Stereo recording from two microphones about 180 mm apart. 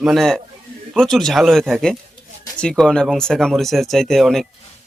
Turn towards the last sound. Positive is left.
turn(degrees=0)  # may be behind; listen again after turning